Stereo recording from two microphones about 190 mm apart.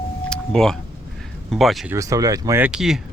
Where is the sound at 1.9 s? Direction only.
20° right (ahead or behind).